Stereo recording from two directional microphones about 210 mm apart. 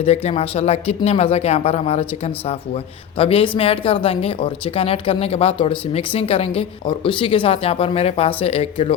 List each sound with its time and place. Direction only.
0.0 s speech: 30° left (ahead or behind)